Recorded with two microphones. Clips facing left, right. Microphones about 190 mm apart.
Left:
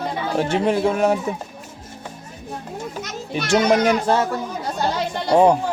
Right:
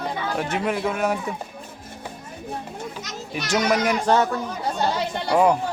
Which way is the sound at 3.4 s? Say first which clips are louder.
Left 5 dB; 25° left (ahead or behind).